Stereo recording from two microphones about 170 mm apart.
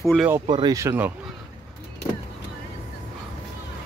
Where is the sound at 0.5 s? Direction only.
25° right (ahead or behind).